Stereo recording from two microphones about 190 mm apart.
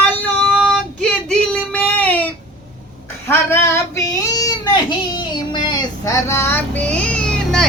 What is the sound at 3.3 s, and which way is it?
Child singing, 10° left (ahead or behind).